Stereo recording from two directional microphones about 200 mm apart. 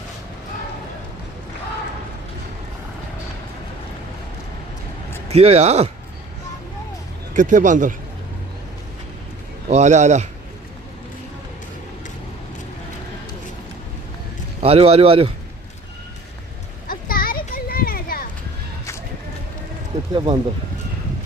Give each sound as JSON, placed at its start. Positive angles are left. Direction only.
{"t": 5.3, "sound": "speech", "side_deg": -30}
{"t": 7.3, "sound": "speech", "side_deg": -40}
{"t": 9.6, "sound": "speech", "side_deg": -35}
{"t": 14.6, "sound": "speech", "side_deg": -30}
{"t": 16.9, "sound": "a sound", "side_deg": 45}
{"t": 20.1, "sound": "speech", "side_deg": -25}